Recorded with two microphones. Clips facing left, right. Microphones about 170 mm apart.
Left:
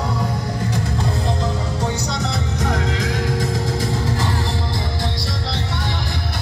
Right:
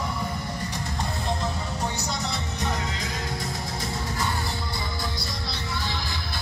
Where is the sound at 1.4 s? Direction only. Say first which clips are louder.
Left 6 dB; 90° left.